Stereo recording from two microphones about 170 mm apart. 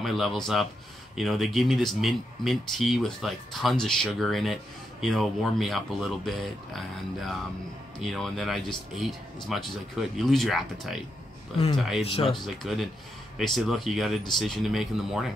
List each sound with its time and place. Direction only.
0.0 s speech: centre (ahead or behind)
12.0 s speech: 35° left (ahead or behind)
12.3 s speech: centre (ahead or behind)